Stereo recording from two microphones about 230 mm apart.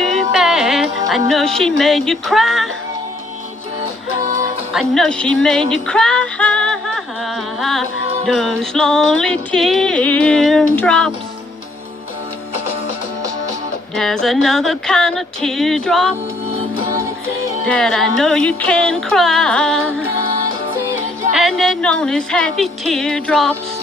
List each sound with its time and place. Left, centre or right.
0.0 s speech: centre
4.7 s music: centre
8.3 s music: centre
13.9 s music: centre
17.6 s music: centre
21.3 s music: centre